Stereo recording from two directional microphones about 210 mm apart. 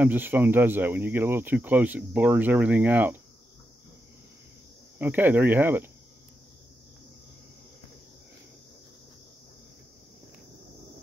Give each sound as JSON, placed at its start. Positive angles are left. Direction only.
{"t": 0.0, "sound": "speech", "side_deg": -10}
{"t": 4.9, "sound": "speech", "side_deg": -10}